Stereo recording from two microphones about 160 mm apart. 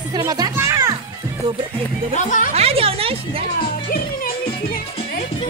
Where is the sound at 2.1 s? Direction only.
55° left (ahead or behind).